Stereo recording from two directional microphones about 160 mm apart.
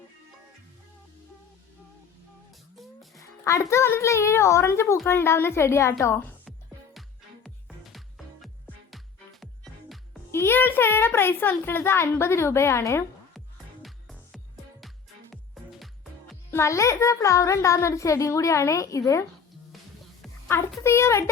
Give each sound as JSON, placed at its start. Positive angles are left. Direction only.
{"t": 2.7, "sound": "music", "side_deg": 0}
{"t": 3.4, "sound": "a child's voice", "side_deg": 20}
{"t": 7.4, "sound": "music", "side_deg": 0}
{"t": 10.3, "sound": "a child's voice", "side_deg": 15}
{"t": 13.8, "sound": "music", "side_deg": 0}
{"t": 16.5, "sound": "a child's voice", "side_deg": 15}
{"t": 20.5, "sound": "a child's voice", "side_deg": 15}